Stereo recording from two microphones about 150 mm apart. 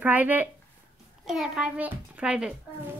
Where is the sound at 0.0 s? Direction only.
10° right (ahead or behind).